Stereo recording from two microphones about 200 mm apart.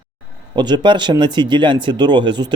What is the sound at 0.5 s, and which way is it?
Speech, 20° right (ahead or behind).